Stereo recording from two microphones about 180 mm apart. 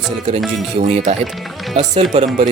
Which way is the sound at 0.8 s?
40° right (ahead or behind).